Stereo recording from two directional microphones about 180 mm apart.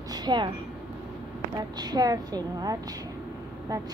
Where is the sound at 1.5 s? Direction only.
20° right (ahead or behind).